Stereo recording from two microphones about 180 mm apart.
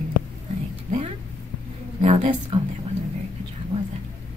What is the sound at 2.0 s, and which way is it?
Speech, 35° right (ahead or behind).